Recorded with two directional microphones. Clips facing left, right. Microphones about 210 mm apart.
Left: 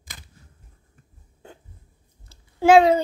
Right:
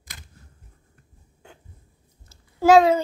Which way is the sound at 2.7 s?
30° left (ahead or behind).